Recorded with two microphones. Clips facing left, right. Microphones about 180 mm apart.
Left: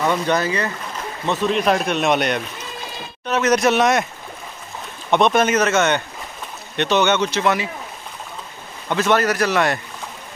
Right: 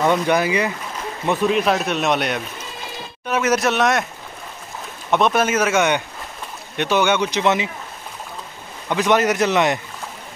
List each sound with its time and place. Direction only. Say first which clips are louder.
0.0 s speech: right 2 dB; 15° right (ahead or behind)
5.1 s speech: left 2 dB; 5° right (ahead or behind); by 7.7 s 20° right (ahead or behind)
8.8 s speech: right 1 dB; 15° right (ahead or behind)